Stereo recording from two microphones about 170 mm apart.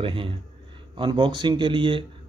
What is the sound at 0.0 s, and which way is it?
Speech, 30° right (ahead or behind).